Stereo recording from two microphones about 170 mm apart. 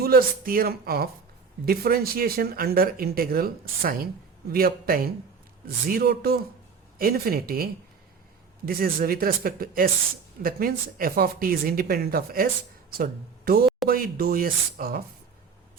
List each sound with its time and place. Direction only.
0.0 s speech: 60° right (ahead or behind)